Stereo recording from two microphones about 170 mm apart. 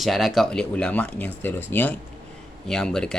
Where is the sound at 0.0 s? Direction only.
Centre (ahead or behind).